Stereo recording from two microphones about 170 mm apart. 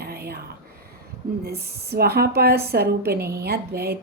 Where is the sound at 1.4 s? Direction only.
70° right (ahead or behind).